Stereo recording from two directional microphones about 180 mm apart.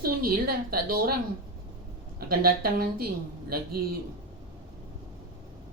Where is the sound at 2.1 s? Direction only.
55° right (ahead or behind).